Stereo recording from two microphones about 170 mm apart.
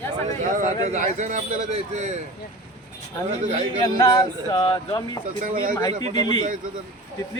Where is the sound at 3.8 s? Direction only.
20° left (ahead or behind).